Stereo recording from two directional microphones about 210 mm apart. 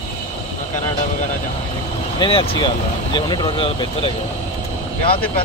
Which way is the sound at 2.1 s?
25° left (ahead or behind).